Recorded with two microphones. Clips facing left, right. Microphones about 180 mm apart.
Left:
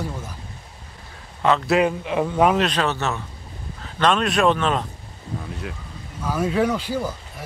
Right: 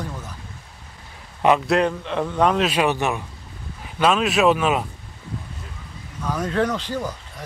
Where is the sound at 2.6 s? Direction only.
10° right (ahead or behind).